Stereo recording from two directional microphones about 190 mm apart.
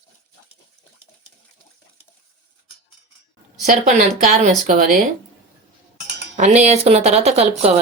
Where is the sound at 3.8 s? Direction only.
40° right (ahead or behind).